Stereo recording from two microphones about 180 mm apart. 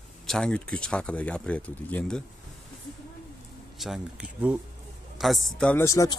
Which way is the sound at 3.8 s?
5° right (ahead or behind).